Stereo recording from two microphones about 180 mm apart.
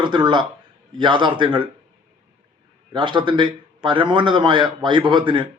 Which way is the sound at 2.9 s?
25° right (ahead or behind).